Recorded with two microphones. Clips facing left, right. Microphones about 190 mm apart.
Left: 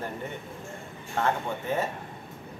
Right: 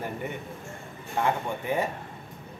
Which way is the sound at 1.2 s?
15° right (ahead or behind).